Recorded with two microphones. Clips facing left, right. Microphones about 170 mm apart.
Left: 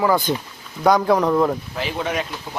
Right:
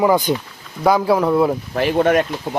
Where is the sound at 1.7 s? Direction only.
55° right (ahead or behind).